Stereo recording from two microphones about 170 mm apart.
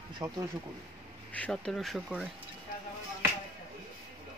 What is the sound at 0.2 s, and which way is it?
Speech, 20° right (ahead or behind).